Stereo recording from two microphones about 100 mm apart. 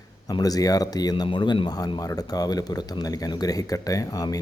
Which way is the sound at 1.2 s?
50° left (ahead or behind).